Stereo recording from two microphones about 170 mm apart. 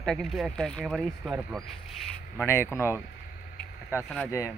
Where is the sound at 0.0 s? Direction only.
5° left (ahead or behind).